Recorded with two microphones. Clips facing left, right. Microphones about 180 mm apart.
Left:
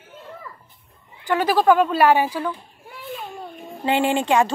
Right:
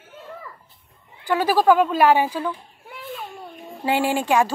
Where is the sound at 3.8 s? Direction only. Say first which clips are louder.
Left 1 dB; 5° right (ahead or behind).